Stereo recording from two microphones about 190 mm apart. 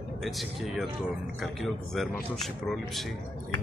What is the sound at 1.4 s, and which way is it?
Speech, centre (ahead or behind).